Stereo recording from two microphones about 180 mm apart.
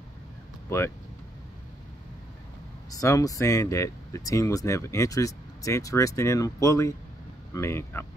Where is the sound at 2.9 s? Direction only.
20° left (ahead or behind).